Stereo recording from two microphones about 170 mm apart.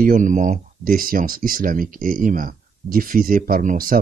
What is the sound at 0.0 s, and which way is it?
Speech, 50° right (ahead or behind).